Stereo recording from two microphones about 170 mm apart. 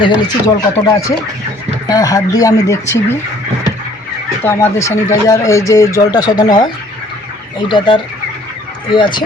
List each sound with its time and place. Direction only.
0.0 s speech: 20° left (ahead or behind)
4.4 s speech: 15° left (ahead or behind)
7.7 s speech: 30° left (ahead or behind)